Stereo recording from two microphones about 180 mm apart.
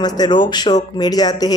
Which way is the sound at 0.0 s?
25° left (ahead or behind).